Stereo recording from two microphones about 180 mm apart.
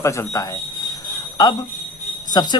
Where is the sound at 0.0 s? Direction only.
15° left (ahead or behind).